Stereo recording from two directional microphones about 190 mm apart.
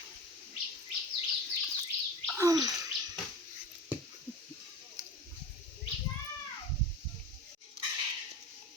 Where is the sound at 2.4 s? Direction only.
20° right (ahead or behind).